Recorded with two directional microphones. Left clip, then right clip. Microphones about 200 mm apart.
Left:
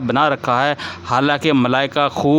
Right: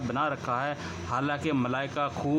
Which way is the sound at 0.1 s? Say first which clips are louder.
Left 14 dB; 45° left (ahead or behind).